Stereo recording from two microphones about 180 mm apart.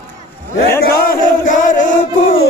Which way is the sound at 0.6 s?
55° left (ahead or behind).